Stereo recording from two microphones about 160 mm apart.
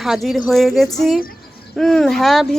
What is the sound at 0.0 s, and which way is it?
Speech, centre (ahead or behind).